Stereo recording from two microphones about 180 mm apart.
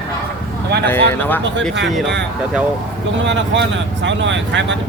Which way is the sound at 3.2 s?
90° right.